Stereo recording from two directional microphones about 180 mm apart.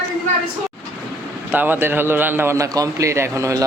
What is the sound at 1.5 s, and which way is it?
A man's voice, 10° right (ahead or behind).